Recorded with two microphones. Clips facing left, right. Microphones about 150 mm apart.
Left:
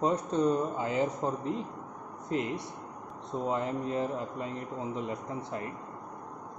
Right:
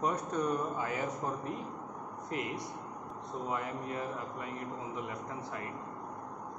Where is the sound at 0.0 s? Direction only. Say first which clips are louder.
Left 5 dB; 25° left (ahead or behind).